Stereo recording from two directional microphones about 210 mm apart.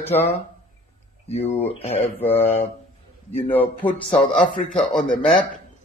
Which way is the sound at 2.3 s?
30° left (ahead or behind).